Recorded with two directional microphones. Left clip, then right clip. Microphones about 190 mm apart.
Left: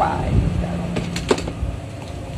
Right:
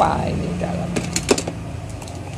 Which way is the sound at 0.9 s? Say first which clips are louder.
Right 1 dB; 45° right (ahead or behind).